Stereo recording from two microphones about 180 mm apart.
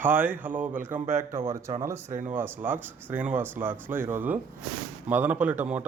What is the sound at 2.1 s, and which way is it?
Speech, 40° right (ahead or behind).